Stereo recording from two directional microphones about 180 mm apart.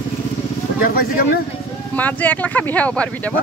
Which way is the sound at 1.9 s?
10° left (ahead or behind).